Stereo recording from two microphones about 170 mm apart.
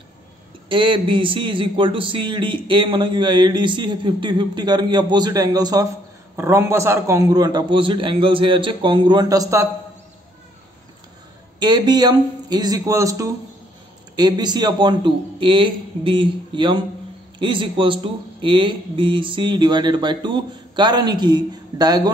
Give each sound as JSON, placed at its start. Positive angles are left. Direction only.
{"t": 0.7, "sound": "a man's voice", "side_deg": -30}
{"t": 11.6, "sound": "a man's voice", "side_deg": -25}